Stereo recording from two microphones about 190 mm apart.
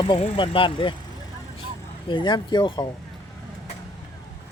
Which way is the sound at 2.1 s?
25° left (ahead or behind).